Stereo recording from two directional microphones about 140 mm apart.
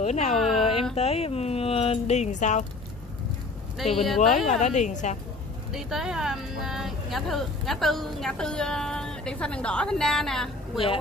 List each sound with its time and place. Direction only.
0.0 s speech: 50° left (ahead or behind)
0.6 s a sound: 40° left (ahead or behind)
0.9 s speech: 45° left (ahead or behind)
3.7 s speech: centre (ahead or behind)
4.5 s a woman's voice: 55° left (ahead or behind)
5.7 s speech: 5° right (ahead or behind)